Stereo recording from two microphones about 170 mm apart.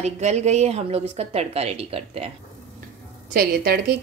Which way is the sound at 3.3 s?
60° right (ahead or behind).